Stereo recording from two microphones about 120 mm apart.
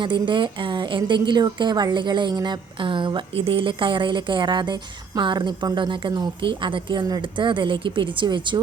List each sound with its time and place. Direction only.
0.0 s a woman's voice: 40° right (ahead or behind)